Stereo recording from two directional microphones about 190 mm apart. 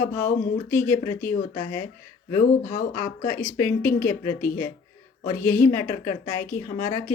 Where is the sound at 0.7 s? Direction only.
10° left (ahead or behind).